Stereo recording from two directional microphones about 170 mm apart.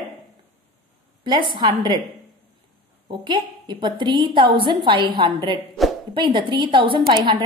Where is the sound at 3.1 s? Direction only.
25° right (ahead or behind).